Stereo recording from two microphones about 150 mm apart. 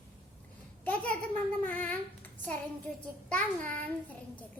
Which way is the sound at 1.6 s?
10° left (ahead or behind).